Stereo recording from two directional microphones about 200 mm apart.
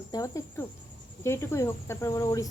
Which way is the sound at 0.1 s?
15° left (ahead or behind).